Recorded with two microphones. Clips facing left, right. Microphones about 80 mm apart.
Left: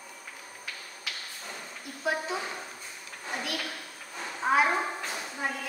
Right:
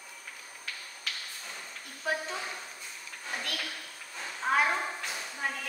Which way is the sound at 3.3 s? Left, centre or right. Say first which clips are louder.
Left 3 dB; centre.